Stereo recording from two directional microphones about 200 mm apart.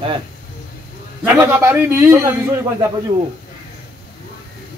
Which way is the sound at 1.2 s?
15° right (ahead or behind).